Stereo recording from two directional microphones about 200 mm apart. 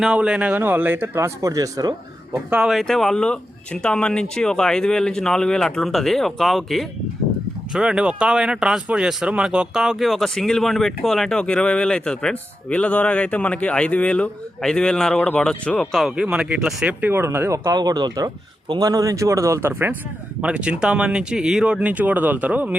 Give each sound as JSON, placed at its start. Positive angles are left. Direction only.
{"t": 0.0, "sound": "speech", "side_deg": -5}
{"t": 2.5, "sound": "speech", "side_deg": 0}